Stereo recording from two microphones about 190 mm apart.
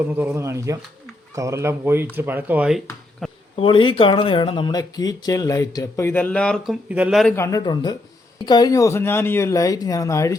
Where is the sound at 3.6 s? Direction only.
25° left (ahead or behind); by 7.3 s centre (ahead or behind).